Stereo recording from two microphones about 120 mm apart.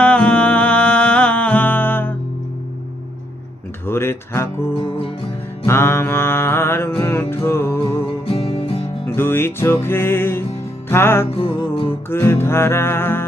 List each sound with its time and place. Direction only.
0.0 s music: 10° left (ahead or behind)
3.8 s music: 20° left (ahead or behind)
4.8 s music: 50° left (ahead or behind)
5.6 s music: 20° left (ahead or behind)
8.2 s music: 55° left (ahead or behind)
9.0 s music: 20° left (ahead or behind)